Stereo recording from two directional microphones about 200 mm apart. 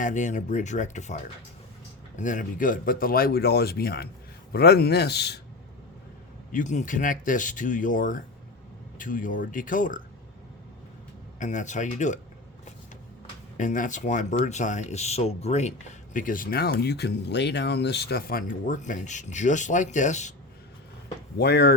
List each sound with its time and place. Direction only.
0.0 s a man's voice: 40° left (ahead or behind); by 5.4 s 55° left (ahead or behind)
6.5 s speech: 40° left (ahead or behind)
11.3 s speech: 35° left (ahead or behind)
13.6 s speech: 40° left (ahead or behind)
21.3 s speech: 55° left (ahead or behind)